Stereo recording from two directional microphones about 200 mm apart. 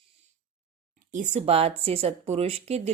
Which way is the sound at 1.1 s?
35° right (ahead or behind).